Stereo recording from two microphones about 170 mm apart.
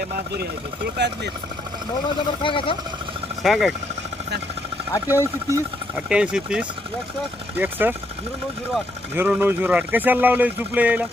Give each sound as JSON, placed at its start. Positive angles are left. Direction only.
{"t": 0.9, "sound": "speech", "side_deg": -85}
{"t": 2.4, "sound": "speech", "side_deg": 30}
{"t": 3.4, "sound": "speech", "side_deg": 0}
{"t": 5.0, "sound": "speech", "side_deg": -15}
{"t": 9.1, "sound": "speech", "side_deg": -10}